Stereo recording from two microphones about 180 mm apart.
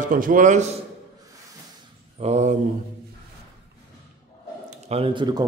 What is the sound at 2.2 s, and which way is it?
Speech, 40° right (ahead or behind).